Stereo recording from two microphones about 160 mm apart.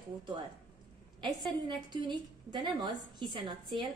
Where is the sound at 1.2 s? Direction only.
30° right (ahead or behind).